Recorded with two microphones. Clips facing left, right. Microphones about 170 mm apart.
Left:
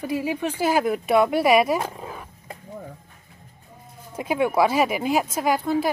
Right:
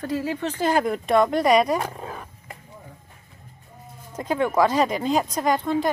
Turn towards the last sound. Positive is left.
turn(degrees=5)  # may be behind; listen again after turning